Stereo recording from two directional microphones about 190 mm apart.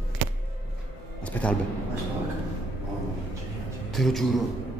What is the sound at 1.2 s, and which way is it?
Speech, 5° left (ahead or behind).